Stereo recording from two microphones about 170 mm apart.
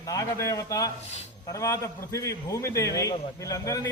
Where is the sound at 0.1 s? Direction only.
20° left (ahead or behind).